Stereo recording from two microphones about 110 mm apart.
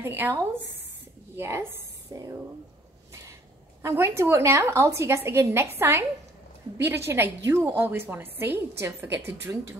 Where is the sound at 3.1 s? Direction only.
30° right (ahead or behind).